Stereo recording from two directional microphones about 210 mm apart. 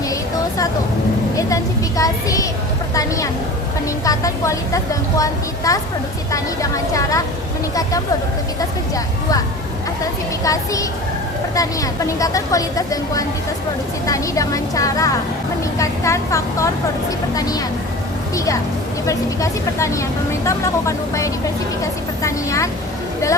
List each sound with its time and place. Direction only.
1.4 s speech: 15° left (ahead or behind)
10.4 s speech: 15° left (ahead or behind)